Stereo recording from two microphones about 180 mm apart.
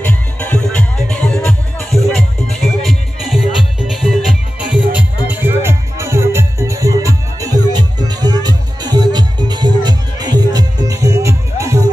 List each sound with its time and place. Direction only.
0.0 s music: 10° left (ahead or behind); by 11.8 s 15° right (ahead or behind)